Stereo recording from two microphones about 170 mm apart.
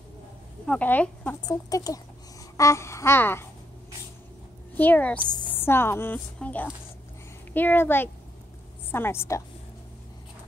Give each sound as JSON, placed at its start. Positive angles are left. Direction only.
{"t": 0.7, "sound": "a woman's voice", "side_deg": 10}
{"t": 4.7, "sound": "a woman's voice", "side_deg": 10}